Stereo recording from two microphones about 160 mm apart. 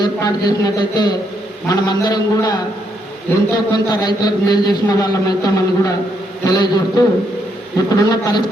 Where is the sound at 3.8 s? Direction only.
25° left (ahead or behind).